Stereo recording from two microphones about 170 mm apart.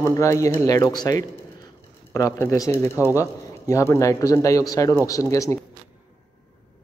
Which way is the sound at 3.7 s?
15° left (ahead or behind).